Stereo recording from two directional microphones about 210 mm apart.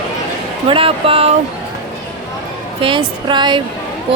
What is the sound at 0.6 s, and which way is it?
Music, 25° right (ahead or behind).